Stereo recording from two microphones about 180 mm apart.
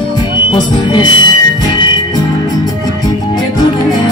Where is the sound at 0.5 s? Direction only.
25° left (ahead or behind).